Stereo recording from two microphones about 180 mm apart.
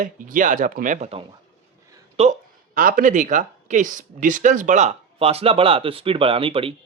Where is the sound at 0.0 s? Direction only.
45° right (ahead or behind).